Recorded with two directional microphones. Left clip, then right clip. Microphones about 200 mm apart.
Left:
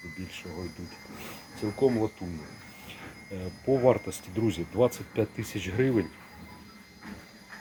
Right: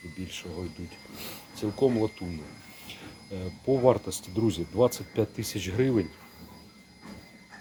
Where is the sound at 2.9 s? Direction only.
10° right (ahead or behind).